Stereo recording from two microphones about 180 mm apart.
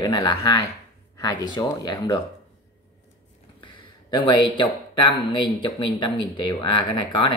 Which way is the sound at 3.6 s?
25° left (ahead or behind).